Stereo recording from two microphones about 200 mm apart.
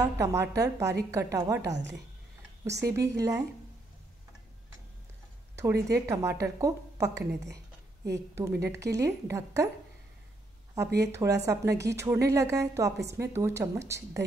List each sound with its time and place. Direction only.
0.0 s a woman's voice: 15° right (ahead or behind)
5.6 s a woman's voice: 15° right (ahead or behind)
7.2 s a woman's voice: 60° right (ahead or behind)
8.6 s a woman's voice: 15° right (ahead or behind)
11.0 s a woman's voice: 15° right (ahead or behind)